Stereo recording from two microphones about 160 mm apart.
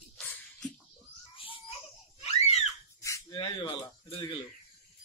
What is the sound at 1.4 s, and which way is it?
Babbling, 35° left (ahead or behind).